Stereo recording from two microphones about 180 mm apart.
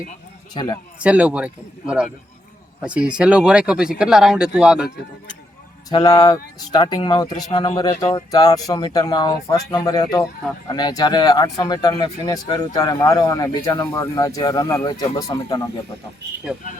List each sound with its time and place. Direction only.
0.5 s speech: 25° left (ahead or behind)
0.9 s a man's voice: 5° right (ahead or behind)
5.9 s speech: 20° left (ahead or behind)